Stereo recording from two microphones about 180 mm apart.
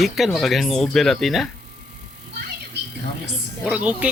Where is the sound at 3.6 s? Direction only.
5° right (ahead or behind).